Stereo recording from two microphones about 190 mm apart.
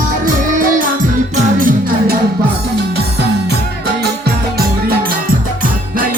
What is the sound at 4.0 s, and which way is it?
Music, 55° right (ahead or behind).